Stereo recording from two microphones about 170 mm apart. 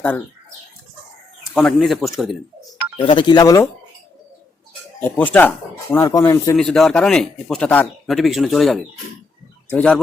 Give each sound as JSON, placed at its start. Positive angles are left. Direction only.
{"t": 1.5, "sound": "speech", "side_deg": 0}
{"t": 3.0, "sound": "speech", "side_deg": 30}
{"t": 4.9, "sound": "speech", "side_deg": 10}
{"t": 6.6, "sound": "speech", "side_deg": 0}